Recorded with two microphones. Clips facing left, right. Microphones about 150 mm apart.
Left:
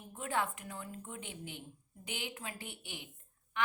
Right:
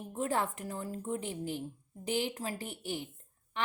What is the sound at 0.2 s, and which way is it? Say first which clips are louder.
A woman's voice: right 4 dB; 35° right (ahead or behind).